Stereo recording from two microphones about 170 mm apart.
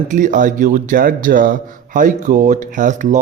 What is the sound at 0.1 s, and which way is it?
A man's voice, 50° right (ahead or behind).